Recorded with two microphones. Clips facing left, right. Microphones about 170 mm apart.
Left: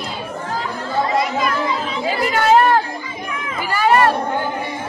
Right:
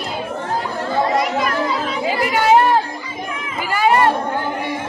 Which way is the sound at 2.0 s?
15° right (ahead or behind).